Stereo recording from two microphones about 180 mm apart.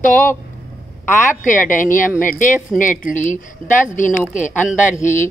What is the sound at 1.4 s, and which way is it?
Speech, 45° left (ahead or behind).